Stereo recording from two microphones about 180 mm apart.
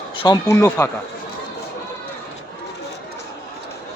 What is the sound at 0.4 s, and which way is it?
Speech, 15° left (ahead or behind).